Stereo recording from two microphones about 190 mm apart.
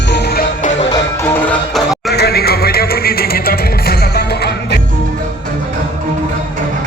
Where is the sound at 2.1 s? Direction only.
55° left (ahead or behind).